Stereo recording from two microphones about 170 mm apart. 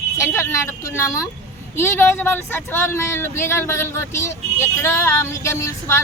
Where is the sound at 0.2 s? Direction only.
15° left (ahead or behind).